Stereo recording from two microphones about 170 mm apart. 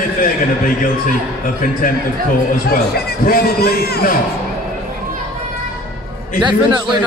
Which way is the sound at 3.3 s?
65° left (ahead or behind).